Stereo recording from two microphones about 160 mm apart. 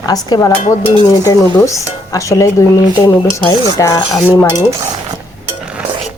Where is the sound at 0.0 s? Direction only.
25° left (ahead or behind).